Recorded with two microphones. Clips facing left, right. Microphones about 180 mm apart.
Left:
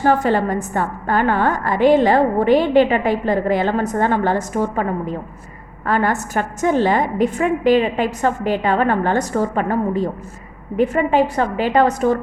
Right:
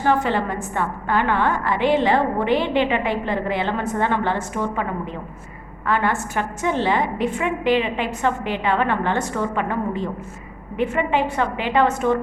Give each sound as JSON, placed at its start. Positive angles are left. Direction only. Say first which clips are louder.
{"t": 0.0, "sound": "a woman's voice", "louder": "left 4 dB", "side_deg": 40}